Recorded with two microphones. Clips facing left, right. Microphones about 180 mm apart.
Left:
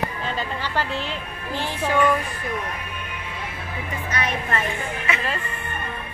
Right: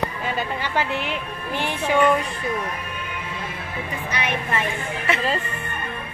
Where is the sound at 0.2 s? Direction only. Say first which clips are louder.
Right 2 dB; 15° right (ahead or behind).